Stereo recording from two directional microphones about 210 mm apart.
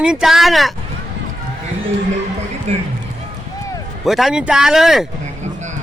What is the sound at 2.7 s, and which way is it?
Speech, 30° right (ahead or behind).